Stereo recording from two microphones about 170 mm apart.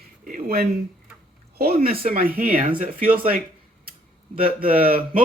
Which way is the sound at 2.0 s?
60° right (ahead or behind).